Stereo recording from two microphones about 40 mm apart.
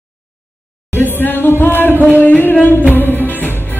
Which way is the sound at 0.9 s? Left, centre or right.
Left.